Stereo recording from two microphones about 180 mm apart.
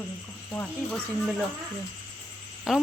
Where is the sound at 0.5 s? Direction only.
10° left (ahead or behind).